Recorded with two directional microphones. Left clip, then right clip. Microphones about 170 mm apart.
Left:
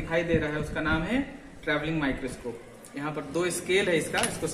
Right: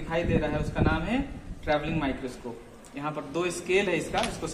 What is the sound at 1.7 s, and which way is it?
Speech, 15° right (ahead or behind).